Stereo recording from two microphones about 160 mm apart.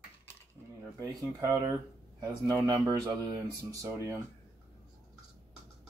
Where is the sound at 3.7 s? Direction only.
20° right (ahead or behind).